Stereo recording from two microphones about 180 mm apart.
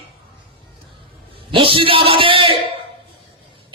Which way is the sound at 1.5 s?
30° right (ahead or behind).